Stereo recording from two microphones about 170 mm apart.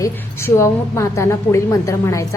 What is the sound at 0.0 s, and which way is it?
A woman's voice, 15° left (ahead or behind).